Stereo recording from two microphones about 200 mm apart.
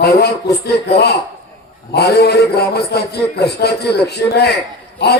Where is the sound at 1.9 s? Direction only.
55° left (ahead or behind).